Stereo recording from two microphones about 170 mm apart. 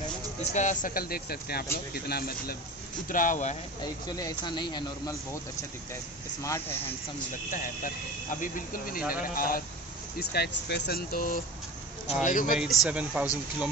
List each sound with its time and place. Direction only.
0.4 s speech: 40° left (ahead or behind); by 2.5 s 65° left (ahead or behind)
3.1 s speech: 50° left (ahead or behind)
3.8 s speech: 20° left (ahead or behind)
6.4 s speech: 15° left (ahead or behind)
7.5 s speech: 55° left (ahead or behind)
10.1 s speech: 70° left (ahead or behind); by 12.5 s 50° left (ahead or behind)
12.5 s speech: 5° right (ahead or behind)